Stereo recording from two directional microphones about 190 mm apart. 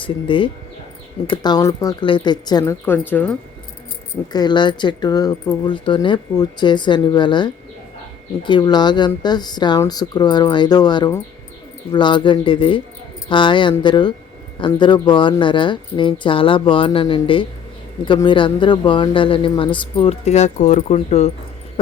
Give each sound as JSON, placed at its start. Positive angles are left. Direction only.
{"t": 0.0, "sound": "speech", "side_deg": 25}
{"t": 4.3, "sound": "speech", "side_deg": 20}